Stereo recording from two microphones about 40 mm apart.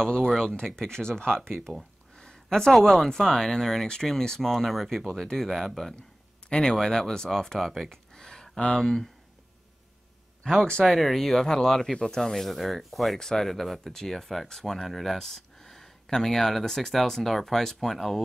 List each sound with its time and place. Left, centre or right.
0.4 s speech: centre
1.8 s a sound: centre
3.2 s speech: centre
4.4 s speech: centre
6.5 s speech: centre
7.9 s a sound: centre
8.5 s speech: centre
8.8 s speech: centre
10.4 s speech: centre